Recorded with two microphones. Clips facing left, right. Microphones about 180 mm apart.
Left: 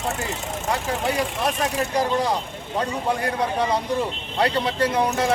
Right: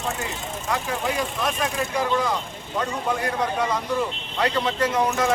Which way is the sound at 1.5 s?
35° left (ahead or behind).